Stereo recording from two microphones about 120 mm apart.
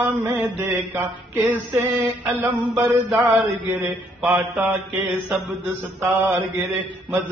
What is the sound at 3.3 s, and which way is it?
Mantra, 15° right (ahead or behind).